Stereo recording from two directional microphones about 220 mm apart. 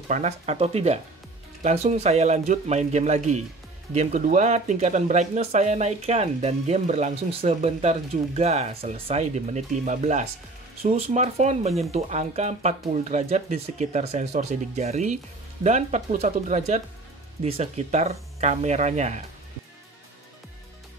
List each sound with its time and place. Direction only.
0.1 s speech: 30° right (ahead or behind)